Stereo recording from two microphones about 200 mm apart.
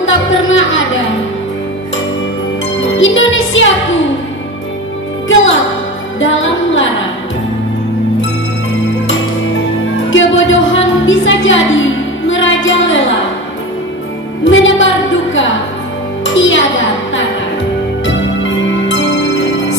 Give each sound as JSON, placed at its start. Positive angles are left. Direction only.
{"t": 0.0, "sound": "a sound", "side_deg": 75}
{"t": 2.8, "sound": "music", "side_deg": 70}
{"t": 5.3, "sound": "music", "side_deg": 70}
{"t": 10.0, "sound": "music", "side_deg": 70}
{"t": 14.4, "sound": "music", "side_deg": 70}
{"t": 16.3, "sound": "music", "side_deg": 70}
{"t": 18.9, "sound": "music", "side_deg": 65}